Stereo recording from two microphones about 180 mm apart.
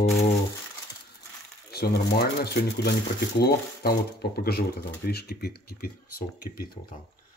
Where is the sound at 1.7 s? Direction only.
60° left (ahead or behind).